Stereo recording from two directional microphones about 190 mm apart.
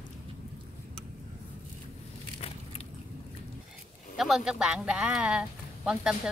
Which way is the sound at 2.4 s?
30° left (ahead or behind).